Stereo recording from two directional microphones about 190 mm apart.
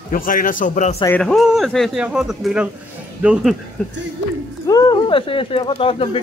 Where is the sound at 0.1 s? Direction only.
45° left (ahead or behind).